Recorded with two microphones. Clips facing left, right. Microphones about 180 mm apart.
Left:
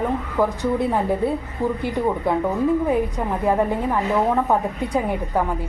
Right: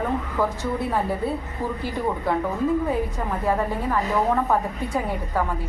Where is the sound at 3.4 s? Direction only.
15° left (ahead or behind).